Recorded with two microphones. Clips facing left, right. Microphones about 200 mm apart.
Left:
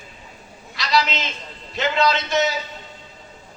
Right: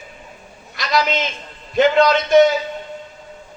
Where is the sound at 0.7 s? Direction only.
50° right (ahead or behind).